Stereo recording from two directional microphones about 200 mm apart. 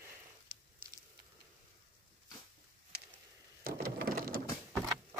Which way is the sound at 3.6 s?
45° right (ahead or behind).